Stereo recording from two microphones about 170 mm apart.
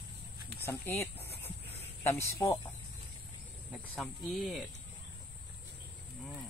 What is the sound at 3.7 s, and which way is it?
Speech, centre (ahead or behind).